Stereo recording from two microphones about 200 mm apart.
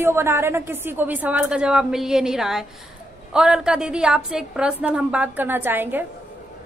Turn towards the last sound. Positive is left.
turn(degrees=-10)  # may be behind; listen again after turning